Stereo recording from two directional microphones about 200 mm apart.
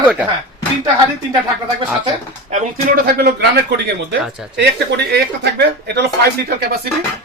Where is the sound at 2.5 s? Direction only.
50° right (ahead or behind).